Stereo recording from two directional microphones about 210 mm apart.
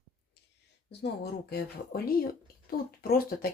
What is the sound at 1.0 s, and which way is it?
Speech, 50° left (ahead or behind).